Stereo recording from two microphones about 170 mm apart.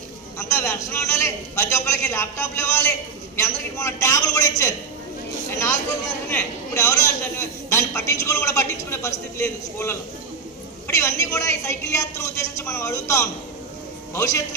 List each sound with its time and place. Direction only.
0.5 s a man's voice: 15° left (ahead or behind)